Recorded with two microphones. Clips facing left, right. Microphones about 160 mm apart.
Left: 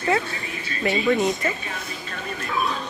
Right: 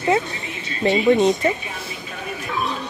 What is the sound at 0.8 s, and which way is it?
Speech, 20° right (ahead or behind).